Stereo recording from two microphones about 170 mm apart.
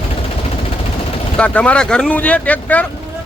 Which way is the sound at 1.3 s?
5° left (ahead or behind).